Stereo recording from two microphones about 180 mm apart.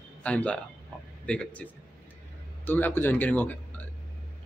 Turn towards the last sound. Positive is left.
turn(degrees=10)  # may be behind; listen again after turning